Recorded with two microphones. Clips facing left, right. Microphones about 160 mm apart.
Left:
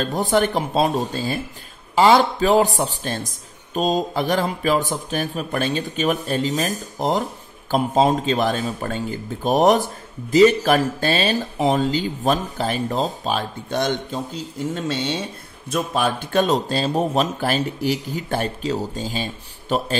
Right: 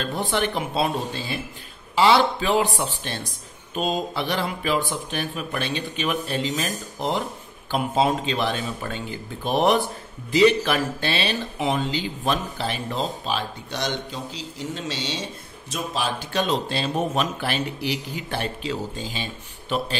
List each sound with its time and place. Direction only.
0.0 s speech: 40° left (ahead or behind)